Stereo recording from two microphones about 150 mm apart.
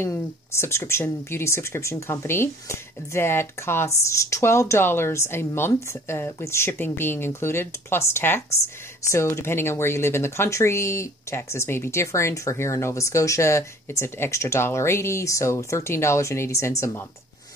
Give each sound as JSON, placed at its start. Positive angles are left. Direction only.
{"t": 0.0, "sound": "speech", "side_deg": 15}